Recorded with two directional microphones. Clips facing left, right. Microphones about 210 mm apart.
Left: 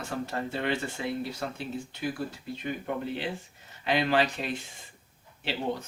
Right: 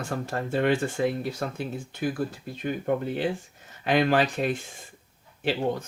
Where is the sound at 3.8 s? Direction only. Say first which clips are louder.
Right 3 dB; 50° right (ahead or behind).